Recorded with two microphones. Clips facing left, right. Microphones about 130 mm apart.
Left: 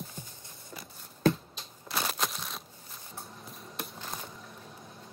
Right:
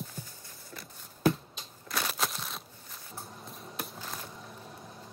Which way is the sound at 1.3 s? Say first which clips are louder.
Even; centre (ahead or behind).